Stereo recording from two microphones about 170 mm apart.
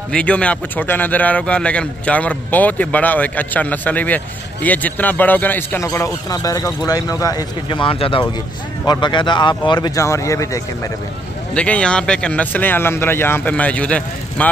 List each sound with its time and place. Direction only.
0.1 s a man's voice: 5° left (ahead or behind)
11.5 s a man's voice: 5° left (ahead or behind)